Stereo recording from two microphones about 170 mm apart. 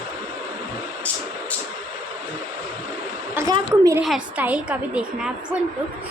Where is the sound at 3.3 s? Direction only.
15° right (ahead or behind).